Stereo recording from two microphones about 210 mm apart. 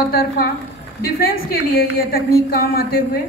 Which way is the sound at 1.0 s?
45° left (ahead or behind).